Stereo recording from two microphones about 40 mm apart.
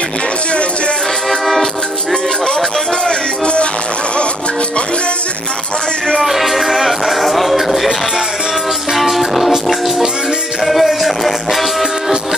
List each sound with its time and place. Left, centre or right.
1.4 s music: centre
3.1 s music: left
6.1 s music: centre
8.9 s music: centre
10.6 s music: centre